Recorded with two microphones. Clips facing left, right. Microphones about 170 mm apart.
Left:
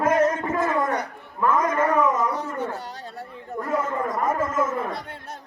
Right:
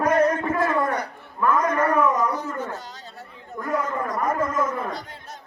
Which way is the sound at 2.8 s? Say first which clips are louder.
Left 4 dB; 65° left (ahead or behind).